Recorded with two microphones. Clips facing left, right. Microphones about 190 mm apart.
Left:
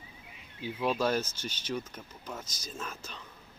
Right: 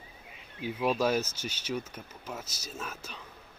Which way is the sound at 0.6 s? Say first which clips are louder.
Right 2 dB; 10° right (ahead or behind).